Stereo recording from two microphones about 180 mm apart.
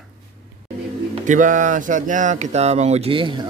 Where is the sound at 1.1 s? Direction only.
45° right (ahead or behind).